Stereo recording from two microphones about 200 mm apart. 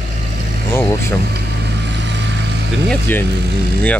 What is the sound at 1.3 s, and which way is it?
Vehicle, 60° right (ahead or behind).